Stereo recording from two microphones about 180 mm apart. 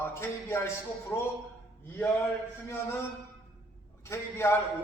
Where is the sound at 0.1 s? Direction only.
15° left (ahead or behind).